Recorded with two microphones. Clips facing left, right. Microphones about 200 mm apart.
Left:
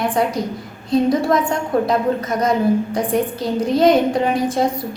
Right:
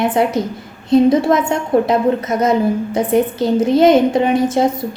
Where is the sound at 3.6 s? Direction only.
Centre (ahead or behind).